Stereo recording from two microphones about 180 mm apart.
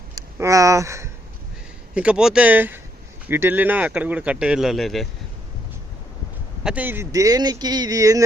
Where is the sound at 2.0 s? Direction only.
5° right (ahead or behind).